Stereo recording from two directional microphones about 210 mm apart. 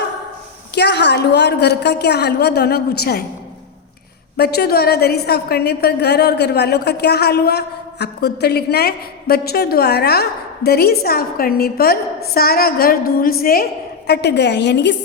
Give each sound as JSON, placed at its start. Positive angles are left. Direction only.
{"t": 0.8, "sound": "a woman's voice", "side_deg": 55}
{"t": 4.4, "sound": "a woman's voice", "side_deg": 50}